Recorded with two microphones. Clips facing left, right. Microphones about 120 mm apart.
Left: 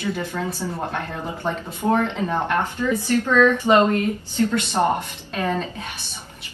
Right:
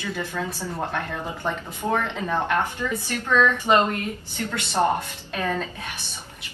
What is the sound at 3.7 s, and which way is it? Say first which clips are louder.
Speech: left 2 dB; 25° left (ahead or behind).